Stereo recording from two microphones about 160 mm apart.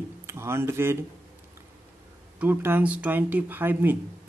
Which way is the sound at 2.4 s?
10° right (ahead or behind).